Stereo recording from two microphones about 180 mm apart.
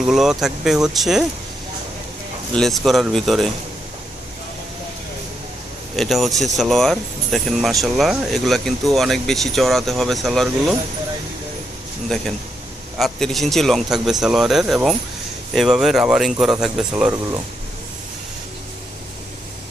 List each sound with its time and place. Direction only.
0.0 s speech: centre (ahead or behind)
2.6 s speech: centre (ahead or behind)
6.0 s speech: centre (ahead or behind)
12.0 s a man's voice: centre (ahead or behind)